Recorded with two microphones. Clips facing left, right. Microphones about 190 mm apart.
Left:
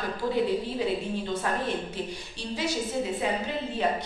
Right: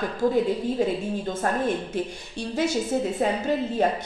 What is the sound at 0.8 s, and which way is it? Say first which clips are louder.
A woman's voice: right 4 dB; 45° right (ahead or behind).